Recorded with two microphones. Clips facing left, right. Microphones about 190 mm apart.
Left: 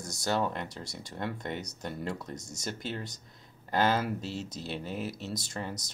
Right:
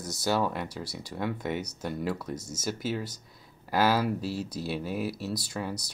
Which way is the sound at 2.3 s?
45° left (ahead or behind).